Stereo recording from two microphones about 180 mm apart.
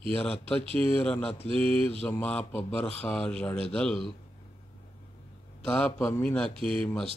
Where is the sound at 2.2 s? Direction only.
10° left (ahead or behind).